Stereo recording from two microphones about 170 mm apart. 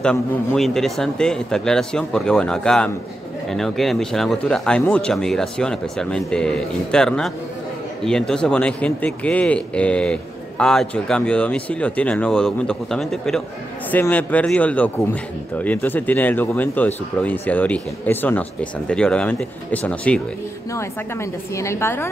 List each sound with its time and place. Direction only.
0.0 s speech: 5° left (ahead or behind)
21.5 s speech: 15° left (ahead or behind)